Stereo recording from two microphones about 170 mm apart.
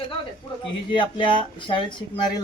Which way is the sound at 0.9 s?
30° left (ahead or behind).